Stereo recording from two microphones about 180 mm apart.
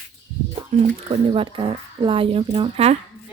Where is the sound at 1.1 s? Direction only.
30° right (ahead or behind).